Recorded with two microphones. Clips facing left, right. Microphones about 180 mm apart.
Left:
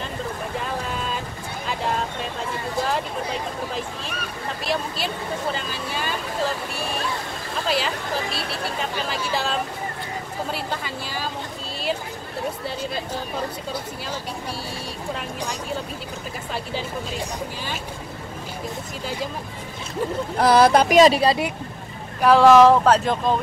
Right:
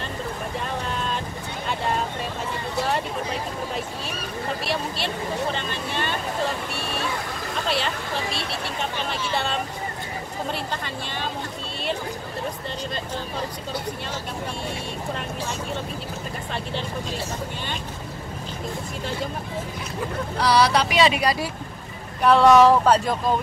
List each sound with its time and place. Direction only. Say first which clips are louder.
4.6 s speech: left 5 dB; centre (ahead or behind)
7.6 s speech: left 3 dB; centre (ahead or behind)
15.1 s speech: even; 5° left (ahead or behind)
20.3 s speech: left 4 dB; 50° left (ahead or behind)
21.2 s speech: left 4 dB; 25° left (ahead or behind)
22.2 s speech: left 2 dB; 5° left (ahead or behind)